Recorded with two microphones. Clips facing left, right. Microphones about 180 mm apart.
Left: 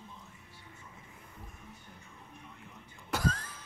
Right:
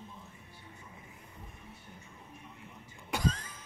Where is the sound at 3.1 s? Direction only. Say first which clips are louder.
Even; 5° left (ahead or behind).